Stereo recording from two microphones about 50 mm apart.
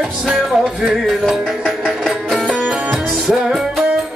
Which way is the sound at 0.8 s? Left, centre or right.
Centre.